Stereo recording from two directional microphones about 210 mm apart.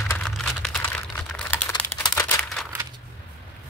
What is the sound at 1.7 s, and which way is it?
Crumpling, 20° left (ahead or behind).